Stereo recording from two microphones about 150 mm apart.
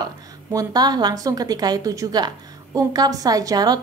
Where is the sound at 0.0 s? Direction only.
25° right (ahead or behind).